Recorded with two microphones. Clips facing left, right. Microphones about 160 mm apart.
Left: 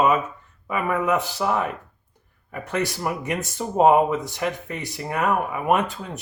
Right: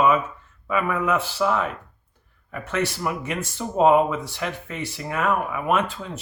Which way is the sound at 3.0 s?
15° left (ahead or behind).